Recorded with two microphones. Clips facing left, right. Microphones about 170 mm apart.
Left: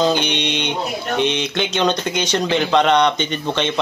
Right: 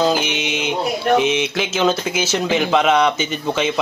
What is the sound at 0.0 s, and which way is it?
Mantra, 5° right (ahead or behind).